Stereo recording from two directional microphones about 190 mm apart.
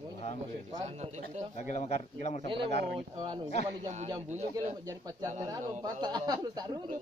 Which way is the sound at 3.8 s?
35° right (ahead or behind).